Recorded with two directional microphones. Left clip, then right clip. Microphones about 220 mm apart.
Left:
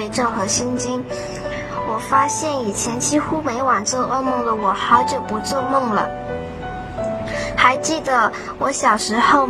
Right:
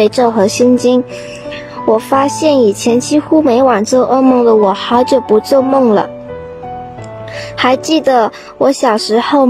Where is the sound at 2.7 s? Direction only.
60° right (ahead or behind).